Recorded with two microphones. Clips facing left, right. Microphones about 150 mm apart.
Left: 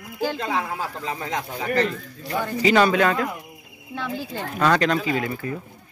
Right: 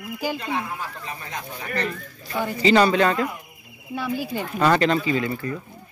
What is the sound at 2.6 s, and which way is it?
Speech, centre (ahead or behind).